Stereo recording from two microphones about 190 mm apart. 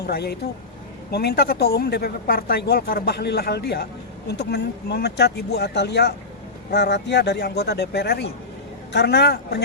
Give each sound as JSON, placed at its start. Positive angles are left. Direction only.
{"t": 0.0, "sound": "speech", "side_deg": 55}